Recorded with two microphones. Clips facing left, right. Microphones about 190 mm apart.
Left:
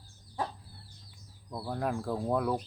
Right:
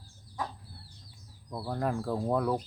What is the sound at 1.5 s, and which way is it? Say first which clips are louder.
Speech: right 1 dB; centre (ahead or behind).